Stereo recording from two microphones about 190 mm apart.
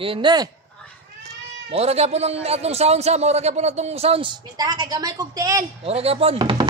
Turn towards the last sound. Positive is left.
turn(degrees=-25)  # may be behind; listen again after turning